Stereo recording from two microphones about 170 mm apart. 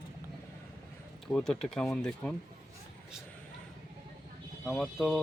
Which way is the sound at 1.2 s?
5° left (ahead or behind).